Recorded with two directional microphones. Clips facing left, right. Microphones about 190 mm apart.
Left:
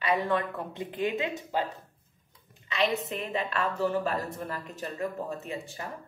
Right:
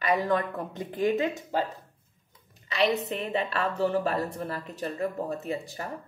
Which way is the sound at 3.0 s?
35° right (ahead or behind).